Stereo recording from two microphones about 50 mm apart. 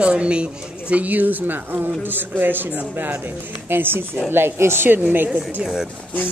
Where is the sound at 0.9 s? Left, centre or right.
Right.